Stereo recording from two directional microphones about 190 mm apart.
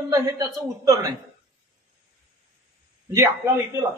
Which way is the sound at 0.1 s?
20° right (ahead or behind).